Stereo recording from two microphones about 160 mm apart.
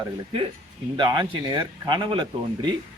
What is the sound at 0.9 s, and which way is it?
A man's voice, 25° right (ahead or behind).